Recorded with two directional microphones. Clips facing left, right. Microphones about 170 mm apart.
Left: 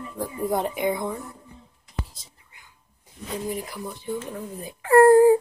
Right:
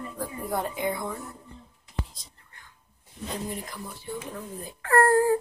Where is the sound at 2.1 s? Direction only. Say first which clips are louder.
Even; 5° left (ahead or behind).